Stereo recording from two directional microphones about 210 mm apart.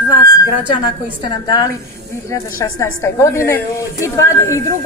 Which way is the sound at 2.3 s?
15° left (ahead or behind).